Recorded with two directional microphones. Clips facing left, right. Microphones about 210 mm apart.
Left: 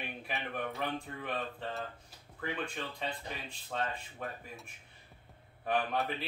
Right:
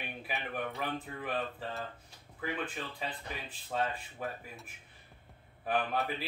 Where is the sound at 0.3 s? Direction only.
5° right (ahead or behind).